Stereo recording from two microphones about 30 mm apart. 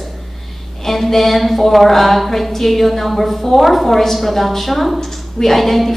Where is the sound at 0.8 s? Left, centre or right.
Centre.